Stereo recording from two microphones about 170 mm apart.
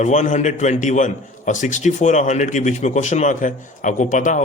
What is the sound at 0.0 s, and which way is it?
A man's voice, 45° left (ahead or behind).